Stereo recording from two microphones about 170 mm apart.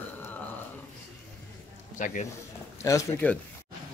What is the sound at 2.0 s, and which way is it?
Speech, 50° left (ahead or behind).